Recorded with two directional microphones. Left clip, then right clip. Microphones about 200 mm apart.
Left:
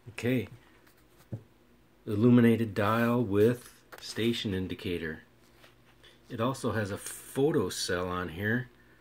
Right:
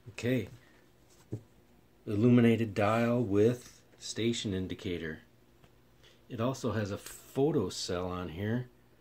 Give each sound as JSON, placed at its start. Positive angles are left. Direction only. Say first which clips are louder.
{"t": 0.1, "sound": "speech", "louder": "left 2 dB", "side_deg": 0}
{"t": 2.0, "sound": "speech", "louder": "left 2 dB", "side_deg": 0}